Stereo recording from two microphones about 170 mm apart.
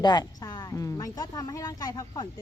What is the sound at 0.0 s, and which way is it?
A woman's voice, 25° left (ahead or behind).